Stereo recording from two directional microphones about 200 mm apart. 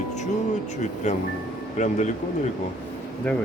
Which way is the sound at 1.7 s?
35° left (ahead or behind).